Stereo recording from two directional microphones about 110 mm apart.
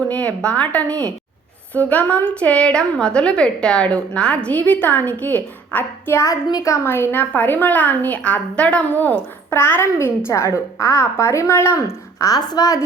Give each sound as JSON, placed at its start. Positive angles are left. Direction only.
{"t": 0.1, "sound": "a woman's voice", "side_deg": 10}